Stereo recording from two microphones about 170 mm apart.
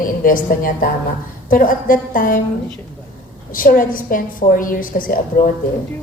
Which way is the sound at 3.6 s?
55° left (ahead or behind).